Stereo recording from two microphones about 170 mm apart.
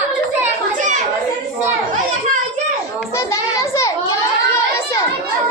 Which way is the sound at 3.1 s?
15° left (ahead or behind).